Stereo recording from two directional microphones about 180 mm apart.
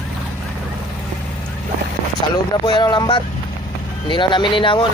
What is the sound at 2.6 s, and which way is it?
Speech, 25° left (ahead or behind).